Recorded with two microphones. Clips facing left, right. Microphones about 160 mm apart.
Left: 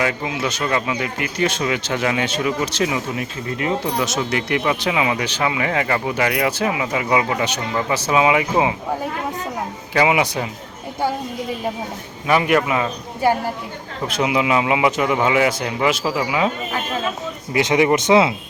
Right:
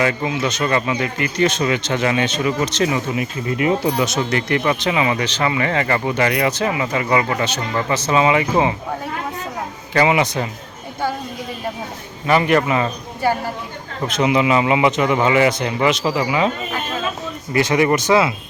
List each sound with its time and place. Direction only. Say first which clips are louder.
0.0 s speech: right 2 dB; 5° left (ahead or behind)
4.0 s speech: right 2 dB; centre (ahead or behind)
9.9 s speech: right 1 dB; 5° left (ahead or behind)
12.3 s speech: right 1 dB; 5° left (ahead or behind)
14.0 s speech: right 3 dB; 5° left (ahead or behind)
17.5 s speech: even; 20° left (ahead or behind)